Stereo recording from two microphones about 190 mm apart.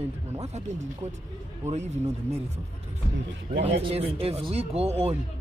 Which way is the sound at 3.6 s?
35° right (ahead or behind).